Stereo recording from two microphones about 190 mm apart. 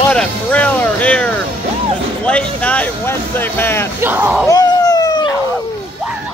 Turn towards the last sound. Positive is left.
turn(degrees=20)  # may be behind; listen again after turning